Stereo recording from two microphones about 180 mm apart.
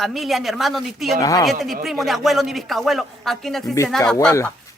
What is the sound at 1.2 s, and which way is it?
Speech, 20° left (ahead or behind).